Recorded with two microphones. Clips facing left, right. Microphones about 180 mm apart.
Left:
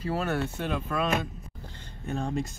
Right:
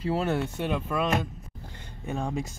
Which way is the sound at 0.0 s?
25° right (ahead or behind).